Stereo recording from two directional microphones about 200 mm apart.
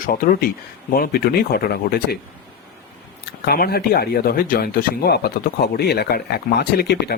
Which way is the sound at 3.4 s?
50° left (ahead or behind).